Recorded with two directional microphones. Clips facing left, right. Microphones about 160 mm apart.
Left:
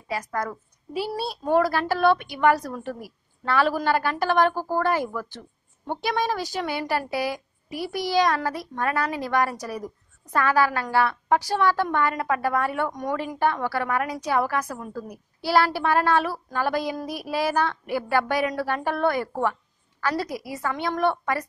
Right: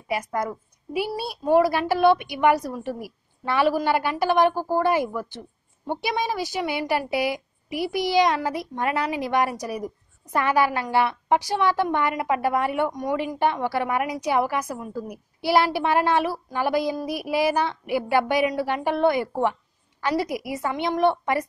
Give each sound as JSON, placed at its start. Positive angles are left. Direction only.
{"t": 0.1, "sound": "a woman's voice", "side_deg": -20}